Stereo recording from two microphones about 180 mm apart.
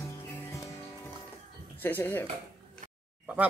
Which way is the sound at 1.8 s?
10° left (ahead or behind).